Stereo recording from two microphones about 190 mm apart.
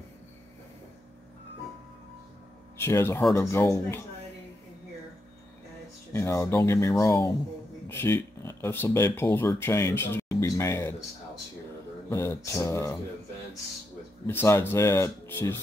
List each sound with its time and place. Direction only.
2.8 s speech: 15° left (ahead or behind)
6.1 s speech: 15° left (ahead or behind)
12.1 s speech: 15° left (ahead or behind)
14.2 s speech: 10° left (ahead or behind)